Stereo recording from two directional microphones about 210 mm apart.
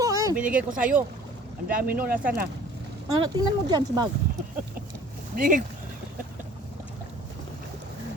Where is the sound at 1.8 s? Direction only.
45° right (ahead or behind).